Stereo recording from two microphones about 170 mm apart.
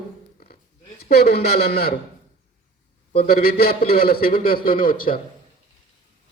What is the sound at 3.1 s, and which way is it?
A man's voice, 60° left (ahead or behind).